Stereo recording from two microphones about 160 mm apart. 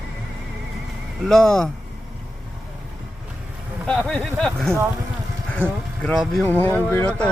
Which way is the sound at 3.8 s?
5° left (ahead or behind).